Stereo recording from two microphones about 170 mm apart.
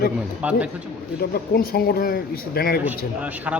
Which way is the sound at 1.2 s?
60° left (ahead or behind).